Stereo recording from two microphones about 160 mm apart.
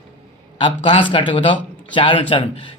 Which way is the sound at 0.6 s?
30° left (ahead or behind).